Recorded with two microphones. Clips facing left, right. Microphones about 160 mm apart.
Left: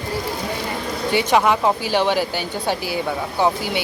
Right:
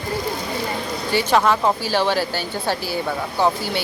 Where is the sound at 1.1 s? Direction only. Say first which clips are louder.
Left 1 dB; 20° left (ahead or behind).